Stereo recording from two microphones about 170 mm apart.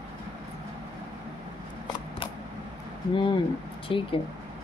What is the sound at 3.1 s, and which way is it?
Speech, 30° left (ahead or behind).